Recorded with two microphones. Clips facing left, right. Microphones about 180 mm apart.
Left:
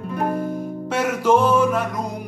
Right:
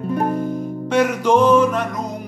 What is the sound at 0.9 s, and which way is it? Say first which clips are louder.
Music: right 2 dB; 5° left (ahead or behind).